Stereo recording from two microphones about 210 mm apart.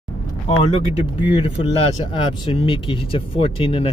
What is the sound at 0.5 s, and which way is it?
Speech, 30° left (ahead or behind).